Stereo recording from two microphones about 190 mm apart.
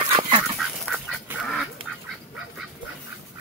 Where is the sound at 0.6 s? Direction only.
Centre (ahead or behind).